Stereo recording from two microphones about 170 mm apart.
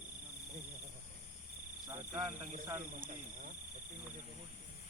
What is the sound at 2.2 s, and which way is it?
Speech, 45° right (ahead or behind).